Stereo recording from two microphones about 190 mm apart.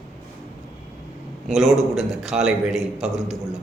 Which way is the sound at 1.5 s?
Centre (ahead or behind).